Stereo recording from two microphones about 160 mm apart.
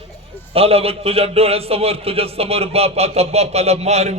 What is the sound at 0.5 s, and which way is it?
A man's voice, 40° right (ahead or behind).